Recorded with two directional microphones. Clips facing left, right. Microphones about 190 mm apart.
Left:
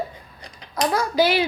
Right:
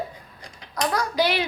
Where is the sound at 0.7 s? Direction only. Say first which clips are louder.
Left 3 dB; 25° left (ahead or behind).